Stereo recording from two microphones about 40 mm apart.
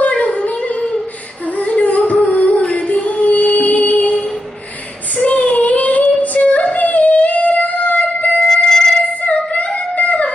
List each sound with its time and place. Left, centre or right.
0.0 s a sound: left
1.6 s a sound: left
2.2 s music: left
5.1 s child singing: left
7.4 s music: left
8.6 s music: centre
9.2 s singing: left
9.9 s music: left